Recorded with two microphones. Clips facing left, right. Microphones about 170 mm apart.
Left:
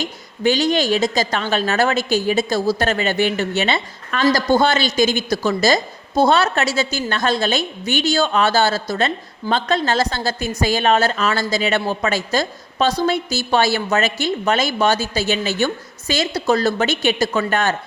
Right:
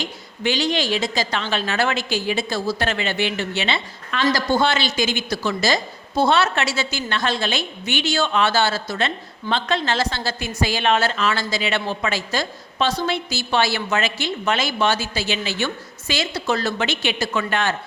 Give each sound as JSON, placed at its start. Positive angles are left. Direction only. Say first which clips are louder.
{"t": 0.0, "sound": "a woman's voice", "louder": "left 5 dB", "side_deg": 45}